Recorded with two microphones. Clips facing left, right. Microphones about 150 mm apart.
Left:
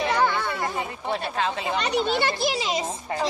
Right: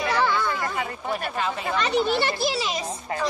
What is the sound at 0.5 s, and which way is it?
Chatter, 30° left (ahead or behind).